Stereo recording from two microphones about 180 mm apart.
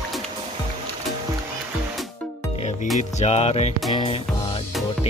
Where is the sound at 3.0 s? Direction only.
40° left (ahead or behind).